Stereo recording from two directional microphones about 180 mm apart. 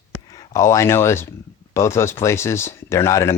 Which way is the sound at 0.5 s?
15° left (ahead or behind).